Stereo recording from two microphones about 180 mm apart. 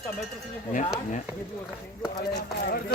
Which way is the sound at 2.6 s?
55° left (ahead or behind).